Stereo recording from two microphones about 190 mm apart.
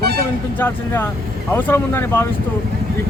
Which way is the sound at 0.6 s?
10° left (ahead or behind).